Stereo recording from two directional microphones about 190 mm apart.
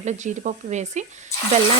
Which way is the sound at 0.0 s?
40° right (ahead or behind).